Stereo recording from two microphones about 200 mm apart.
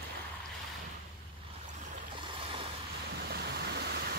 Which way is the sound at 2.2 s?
25° right (ahead or behind).